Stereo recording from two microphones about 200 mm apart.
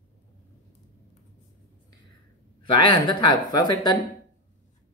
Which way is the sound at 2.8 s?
25° left (ahead or behind).